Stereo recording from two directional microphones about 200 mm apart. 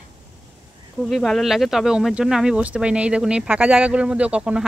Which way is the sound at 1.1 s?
Centre (ahead or behind).